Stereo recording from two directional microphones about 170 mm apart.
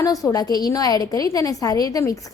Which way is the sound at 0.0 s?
20° left (ahead or behind).